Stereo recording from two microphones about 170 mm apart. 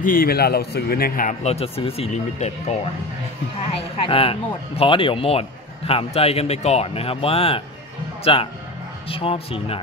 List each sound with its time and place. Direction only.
0.0 s a man's voice: 55° left (ahead or behind)
1.4 s speech: 35° left (ahead or behind)